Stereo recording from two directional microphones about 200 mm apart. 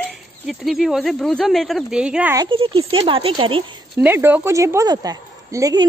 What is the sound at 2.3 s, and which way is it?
Speech, 25° right (ahead or behind).